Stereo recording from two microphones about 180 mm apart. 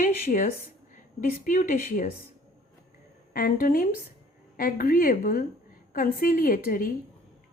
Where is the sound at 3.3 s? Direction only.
50° left (ahead or behind).